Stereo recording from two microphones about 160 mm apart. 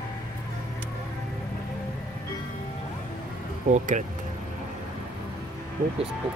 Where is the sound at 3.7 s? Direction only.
50° right (ahead or behind).